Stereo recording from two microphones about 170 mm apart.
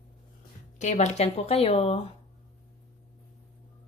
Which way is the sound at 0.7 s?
45° left (ahead or behind).